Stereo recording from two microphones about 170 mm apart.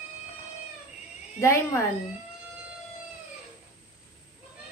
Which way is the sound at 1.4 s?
15° left (ahead or behind).